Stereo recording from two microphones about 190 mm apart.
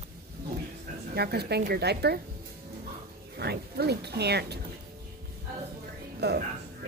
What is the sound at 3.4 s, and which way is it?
Speech, 60° right (ahead or behind).